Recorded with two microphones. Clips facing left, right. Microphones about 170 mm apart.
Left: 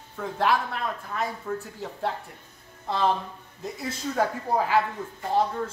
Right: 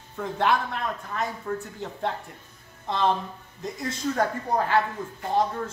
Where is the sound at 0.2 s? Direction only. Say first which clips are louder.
Even; centre (ahead or behind).